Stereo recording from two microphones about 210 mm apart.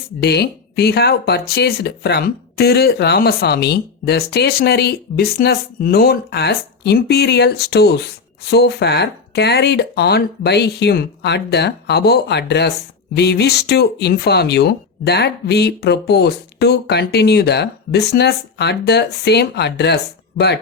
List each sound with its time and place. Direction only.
0.2 s speech: 50° left (ahead or behind)